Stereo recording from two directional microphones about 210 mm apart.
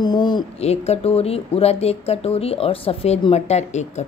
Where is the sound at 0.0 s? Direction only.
20° left (ahead or behind).